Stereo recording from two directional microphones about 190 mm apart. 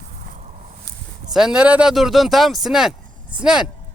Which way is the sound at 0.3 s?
35° right (ahead or behind).